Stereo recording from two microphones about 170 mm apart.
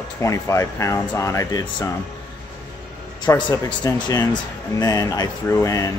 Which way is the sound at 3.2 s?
20° left (ahead or behind).